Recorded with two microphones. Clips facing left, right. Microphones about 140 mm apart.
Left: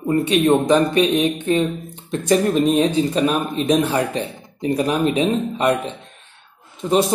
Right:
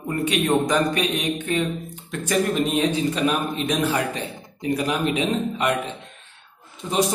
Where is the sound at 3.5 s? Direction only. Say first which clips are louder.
Left 5 dB; 30° left (ahead or behind).